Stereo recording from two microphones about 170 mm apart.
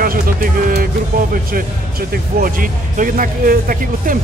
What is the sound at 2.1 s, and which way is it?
Speech, 55° right (ahead or behind).